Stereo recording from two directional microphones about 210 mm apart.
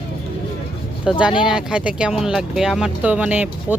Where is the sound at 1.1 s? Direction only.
5° right (ahead or behind).